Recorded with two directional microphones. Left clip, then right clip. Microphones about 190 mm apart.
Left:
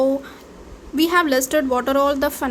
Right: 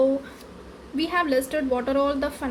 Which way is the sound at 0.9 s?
35° left (ahead or behind).